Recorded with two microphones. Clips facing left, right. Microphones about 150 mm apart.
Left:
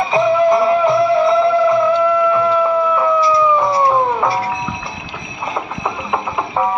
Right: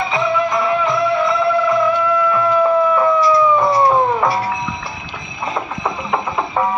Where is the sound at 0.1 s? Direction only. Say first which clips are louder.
Left 8 dB; 30° left (ahead or behind).